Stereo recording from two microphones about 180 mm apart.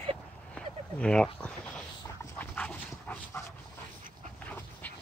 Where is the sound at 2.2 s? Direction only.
10° left (ahead or behind).